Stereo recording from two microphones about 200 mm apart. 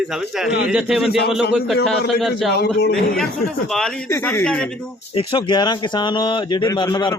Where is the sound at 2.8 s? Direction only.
55° left (ahead or behind).